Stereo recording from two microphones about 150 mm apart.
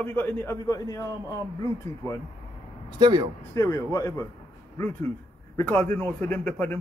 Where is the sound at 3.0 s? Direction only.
30° right (ahead or behind).